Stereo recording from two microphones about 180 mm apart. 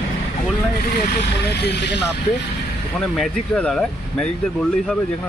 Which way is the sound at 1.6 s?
70° left (ahead or behind).